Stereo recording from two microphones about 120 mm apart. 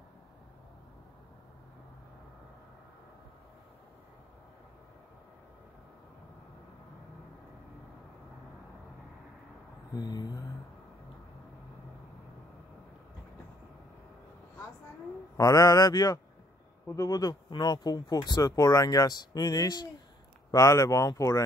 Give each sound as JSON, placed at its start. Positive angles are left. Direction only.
{"t": 9.9, "sound": "mantra", "side_deg": 35}
{"t": 15.3, "sound": "speech", "side_deg": 30}